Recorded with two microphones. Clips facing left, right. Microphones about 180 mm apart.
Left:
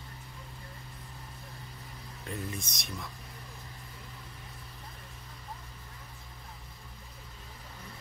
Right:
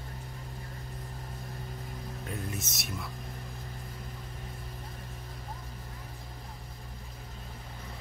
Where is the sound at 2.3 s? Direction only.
5° right (ahead or behind).